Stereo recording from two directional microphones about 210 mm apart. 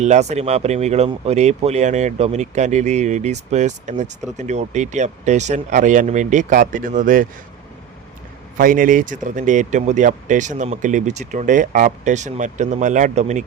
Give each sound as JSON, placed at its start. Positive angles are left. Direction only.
{"t": 0.0, "sound": "speech", "side_deg": -35}
{"t": 8.5, "sound": "speech", "side_deg": -40}